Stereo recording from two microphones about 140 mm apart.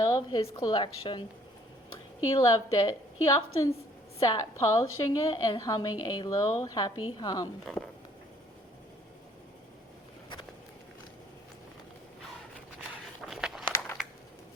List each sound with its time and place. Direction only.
0.0 s a woman's voice: 30° left (ahead or behind)
2.4 s a woman's voice: 25° left (ahead or behind)
7.6 s speech: 5° left (ahead or behind)
13.2 s a sound: centre (ahead or behind)